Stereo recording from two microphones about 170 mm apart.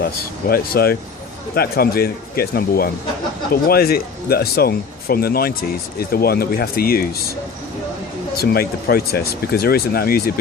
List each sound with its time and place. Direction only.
0.0 s speech: 65° left (ahead or behind)
8.4 s speech: 65° left (ahead or behind)